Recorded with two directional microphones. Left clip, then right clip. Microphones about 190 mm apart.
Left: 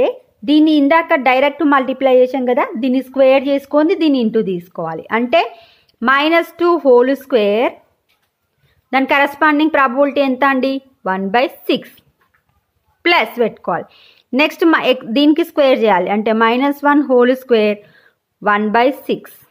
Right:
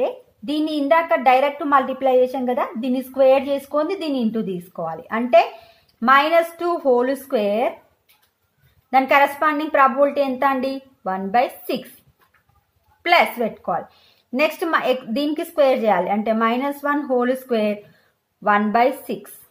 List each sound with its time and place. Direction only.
0.0 s a woman's voice: 55° left (ahead or behind)
8.9 s a woman's voice: 45° left (ahead or behind)
13.0 s a woman's voice: 50° left (ahead or behind)